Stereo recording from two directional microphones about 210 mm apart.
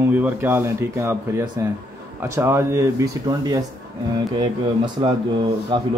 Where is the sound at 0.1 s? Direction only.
10° right (ahead or behind).